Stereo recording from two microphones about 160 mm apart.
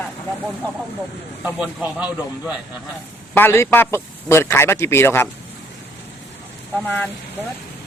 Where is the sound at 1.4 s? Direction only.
5° right (ahead or behind).